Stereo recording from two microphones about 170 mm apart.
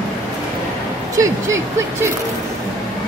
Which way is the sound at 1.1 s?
20° right (ahead or behind).